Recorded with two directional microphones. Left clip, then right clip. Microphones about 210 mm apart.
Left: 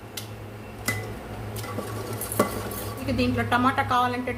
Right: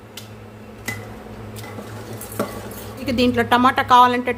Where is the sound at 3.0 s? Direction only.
55° right (ahead or behind).